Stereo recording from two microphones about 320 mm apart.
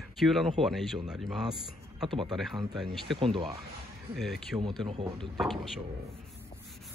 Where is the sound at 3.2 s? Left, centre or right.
Centre.